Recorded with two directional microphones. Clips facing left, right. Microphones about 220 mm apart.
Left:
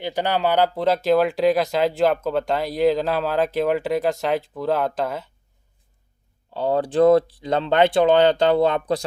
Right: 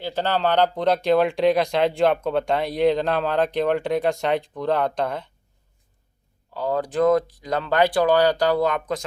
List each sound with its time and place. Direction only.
0.0 s speech: 15° left (ahead or behind)
6.5 s speech: 30° left (ahead or behind)